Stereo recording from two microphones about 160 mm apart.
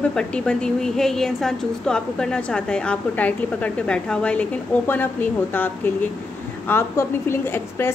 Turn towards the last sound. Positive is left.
turn(degrees=15)  # may be behind; listen again after turning